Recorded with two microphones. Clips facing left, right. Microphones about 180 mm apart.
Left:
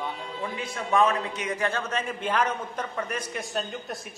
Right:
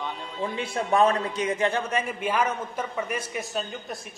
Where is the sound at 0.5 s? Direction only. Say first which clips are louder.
Right 2 dB; 30° right (ahead or behind).